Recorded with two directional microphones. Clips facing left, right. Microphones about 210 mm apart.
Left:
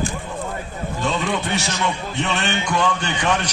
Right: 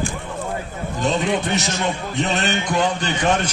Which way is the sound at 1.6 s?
40° right (ahead or behind).